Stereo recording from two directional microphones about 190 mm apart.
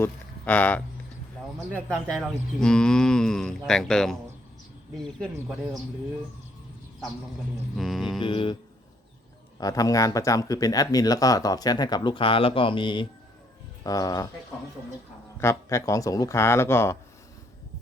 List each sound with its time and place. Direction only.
0.0 s a sound: 10° left (ahead or behind)
1.7 s speech: 5° left (ahead or behind)
7.8 s speech: centre (ahead or behind)
8.2 s speech: 25° left (ahead or behind)
9.6 s speech: 20° left (ahead or behind)
15.4 s speech: 15° left (ahead or behind)